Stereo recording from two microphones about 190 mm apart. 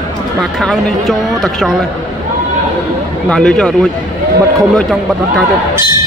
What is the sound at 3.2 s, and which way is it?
A man's voice, 5° left (ahead or behind).